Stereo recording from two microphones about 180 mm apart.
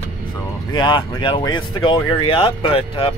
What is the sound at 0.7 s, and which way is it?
Speech, 25° left (ahead or behind).